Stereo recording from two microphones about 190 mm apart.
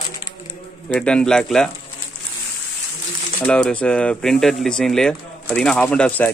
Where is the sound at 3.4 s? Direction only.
5° left (ahead or behind).